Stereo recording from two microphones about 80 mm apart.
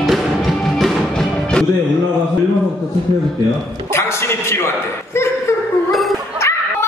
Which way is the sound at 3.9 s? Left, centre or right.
Left.